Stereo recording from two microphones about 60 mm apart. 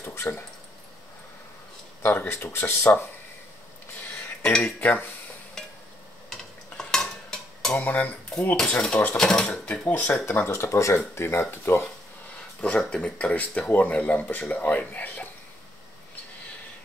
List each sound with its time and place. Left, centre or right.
0.0 s speech: left
2.0 s speech: left
4.4 s speech: centre
4.6 s speech: left
6.3 s stir: centre
7.8 s speech: left
8.5 s speech: centre
9.7 s speech: left
10.2 s speech: left
10.7 s speech: left
11.1 s speech: left
12.6 s speech: left